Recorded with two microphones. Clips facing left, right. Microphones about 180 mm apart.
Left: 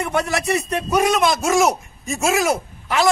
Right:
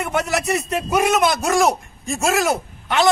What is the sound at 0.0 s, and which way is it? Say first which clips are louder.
A man's voice: even; centre (ahead or behind).